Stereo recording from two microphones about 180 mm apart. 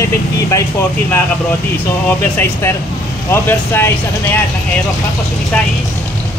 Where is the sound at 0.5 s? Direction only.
15° left (ahead or behind).